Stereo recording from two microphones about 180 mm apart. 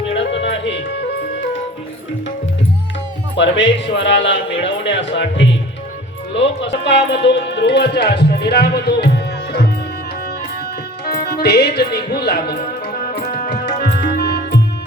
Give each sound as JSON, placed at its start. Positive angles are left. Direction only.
{"t": 0.1, "sound": "music", "side_deg": 80}
{"t": 3.3, "sound": "speech", "side_deg": 85}
{"t": 11.3, "sound": "music", "side_deg": 60}